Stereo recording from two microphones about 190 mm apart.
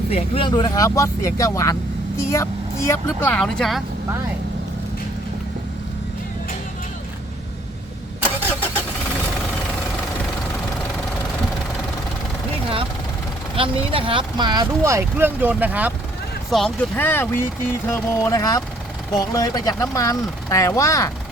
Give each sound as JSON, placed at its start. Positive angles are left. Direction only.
{"t": 0.1, "sound": "speech", "side_deg": 30}
{"t": 13.6, "sound": "speech", "side_deg": -30}
{"t": 16.5, "sound": "speech", "side_deg": 5}